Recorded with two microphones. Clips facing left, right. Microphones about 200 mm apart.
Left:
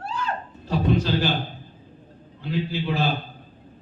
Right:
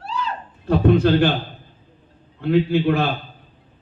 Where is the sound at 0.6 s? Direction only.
55° right (ahead or behind).